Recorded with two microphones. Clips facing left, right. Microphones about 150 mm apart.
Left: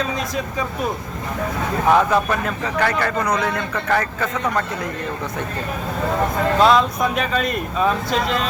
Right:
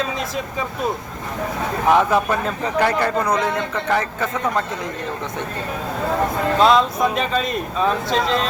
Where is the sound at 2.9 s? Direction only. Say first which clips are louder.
Right 1 dB; 25° right (ahead or behind).